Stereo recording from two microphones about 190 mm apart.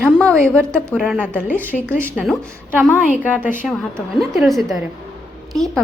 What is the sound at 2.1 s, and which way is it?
A woman's voice, centre (ahead or behind).